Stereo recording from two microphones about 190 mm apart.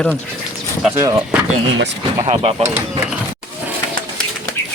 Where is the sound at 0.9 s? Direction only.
15° right (ahead or behind).